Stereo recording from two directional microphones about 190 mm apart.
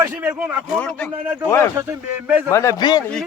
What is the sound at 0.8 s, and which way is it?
Speech, 5° left (ahead or behind).